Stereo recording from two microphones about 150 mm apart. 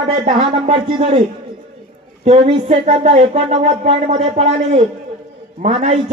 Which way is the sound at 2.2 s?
45° right (ahead or behind).